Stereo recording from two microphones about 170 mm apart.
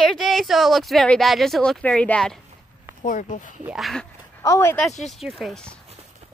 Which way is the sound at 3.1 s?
50° left (ahead or behind).